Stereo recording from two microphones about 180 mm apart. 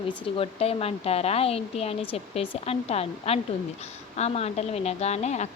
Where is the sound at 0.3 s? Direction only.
35° left (ahead or behind).